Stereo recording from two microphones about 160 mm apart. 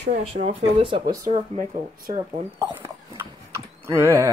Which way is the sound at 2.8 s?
15° right (ahead or behind).